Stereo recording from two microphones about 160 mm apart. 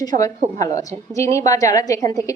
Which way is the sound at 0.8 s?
20° left (ahead or behind).